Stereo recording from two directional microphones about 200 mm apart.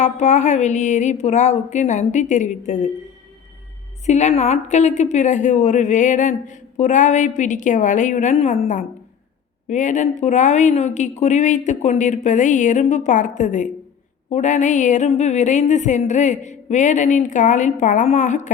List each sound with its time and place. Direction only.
0.0 s a woman's voice: 35° left (ahead or behind)
4.0 s a woman's voice: 35° left (ahead or behind)